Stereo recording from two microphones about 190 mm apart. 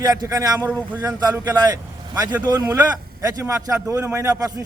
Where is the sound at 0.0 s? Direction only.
20° right (ahead or behind).